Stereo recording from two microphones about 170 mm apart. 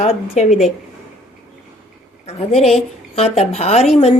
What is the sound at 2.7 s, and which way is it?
A woman's voice, 40° left (ahead or behind).